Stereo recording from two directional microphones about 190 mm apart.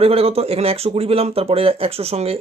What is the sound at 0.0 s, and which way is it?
Speech, 30° right (ahead or behind).